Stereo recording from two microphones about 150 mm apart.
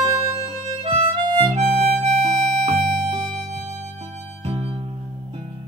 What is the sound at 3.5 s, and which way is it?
Music, 45° right (ahead or behind).